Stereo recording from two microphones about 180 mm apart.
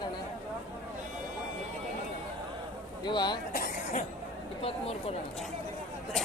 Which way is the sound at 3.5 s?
55° left (ahead or behind).